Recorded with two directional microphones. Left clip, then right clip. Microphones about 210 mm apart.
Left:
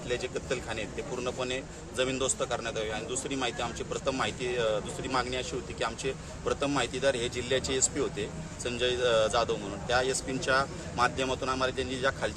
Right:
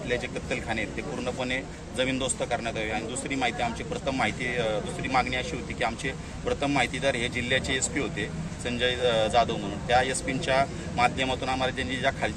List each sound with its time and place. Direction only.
1.2 s a man's voice: 20° left (ahead or behind)